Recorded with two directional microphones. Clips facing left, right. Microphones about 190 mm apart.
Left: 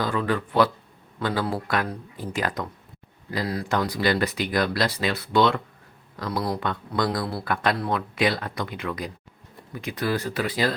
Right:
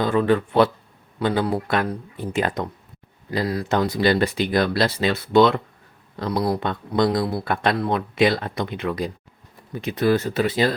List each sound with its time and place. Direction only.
0.0 s speech: 25° right (ahead or behind)